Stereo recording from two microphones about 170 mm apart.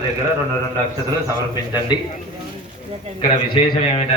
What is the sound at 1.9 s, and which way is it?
Speech, 25° left (ahead or behind).